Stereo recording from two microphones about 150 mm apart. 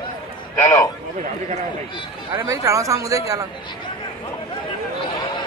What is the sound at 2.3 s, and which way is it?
A man's voice, 20° right (ahead or behind).